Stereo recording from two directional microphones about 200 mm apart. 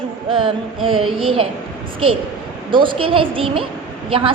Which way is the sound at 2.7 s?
25° right (ahead or behind).